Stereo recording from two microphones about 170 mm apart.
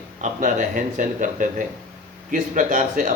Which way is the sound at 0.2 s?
50° right (ahead or behind).